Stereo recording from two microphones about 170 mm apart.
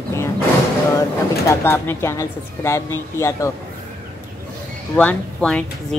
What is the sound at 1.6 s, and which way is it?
A woman's voice, 15° left (ahead or behind).